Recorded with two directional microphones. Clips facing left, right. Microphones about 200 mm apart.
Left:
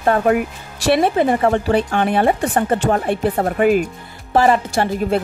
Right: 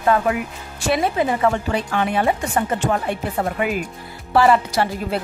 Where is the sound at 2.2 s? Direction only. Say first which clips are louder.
Left 4 dB; 35° left (ahead or behind).